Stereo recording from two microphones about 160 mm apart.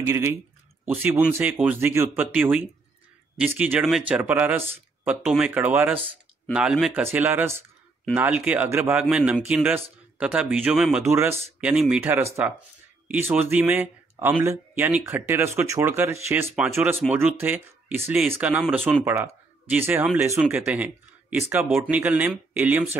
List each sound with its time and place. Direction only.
0.0 s speech: 15° right (ahead or behind)